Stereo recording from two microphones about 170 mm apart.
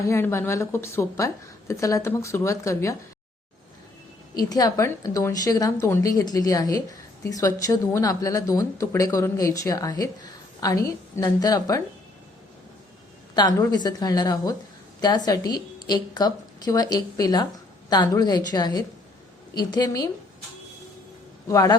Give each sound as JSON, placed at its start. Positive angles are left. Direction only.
{"t": 0.1, "sound": "a woman's voice", "side_deg": 15}
{"t": 4.4, "sound": "speech", "side_deg": 20}
{"t": 13.3, "sound": "speech", "side_deg": 25}
{"t": 21.4, "sound": "speech", "side_deg": 20}